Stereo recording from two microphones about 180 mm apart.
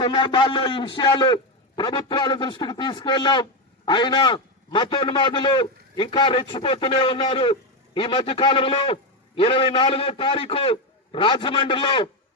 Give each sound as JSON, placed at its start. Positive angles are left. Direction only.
{"t": 0.0, "sound": "a man's voice", "side_deg": 25}